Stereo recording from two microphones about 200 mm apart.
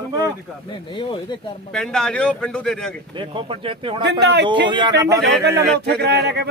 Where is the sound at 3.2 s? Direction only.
25° right (ahead or behind).